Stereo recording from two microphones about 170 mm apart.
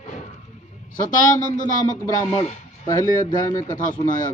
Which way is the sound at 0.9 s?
50° left (ahead or behind).